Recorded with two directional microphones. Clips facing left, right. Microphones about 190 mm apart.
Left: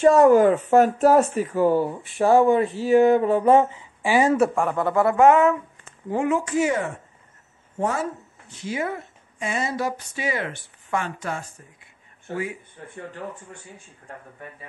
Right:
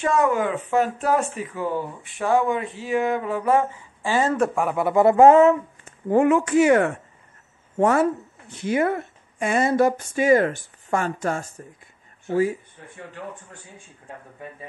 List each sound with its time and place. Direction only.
0.0 s speech: 35° left (ahead or behind); by 4.6 s 5° left (ahead or behind)
4.6 s speech: 10° right (ahead or behind)
5.0 s a sound: 30° right (ahead or behind)
6.0 s speech: 55° right (ahead or behind)